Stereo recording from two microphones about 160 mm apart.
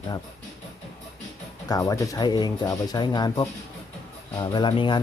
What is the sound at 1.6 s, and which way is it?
Speech, 20° left (ahead or behind).